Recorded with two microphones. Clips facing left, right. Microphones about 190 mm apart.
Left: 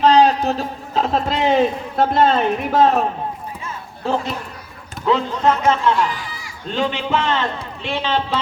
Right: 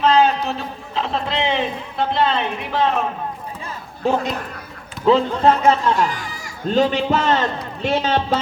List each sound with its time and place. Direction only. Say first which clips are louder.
0.0 s a sound: left 2 dB; 35° left (ahead or behind)
0.3 s a man's voice: left 4 dB; 40° left (ahead or behind)
5.0 s a man's voice: right 3 dB; 30° right (ahead or behind)